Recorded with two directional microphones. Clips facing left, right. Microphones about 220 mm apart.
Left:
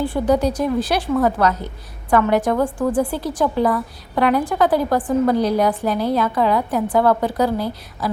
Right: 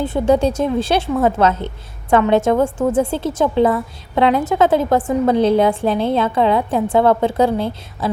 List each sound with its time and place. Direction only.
0.0 s a woman's voice: 25° right (ahead or behind)